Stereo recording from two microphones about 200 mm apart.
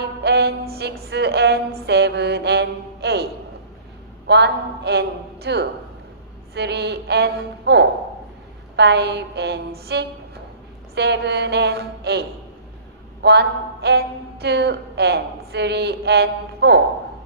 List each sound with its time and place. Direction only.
0.0 s music: 55° right (ahead or behind)
1.9 s a woman's voice: 55° right (ahead or behind)
4.3 s a woman's voice: 55° right (ahead or behind)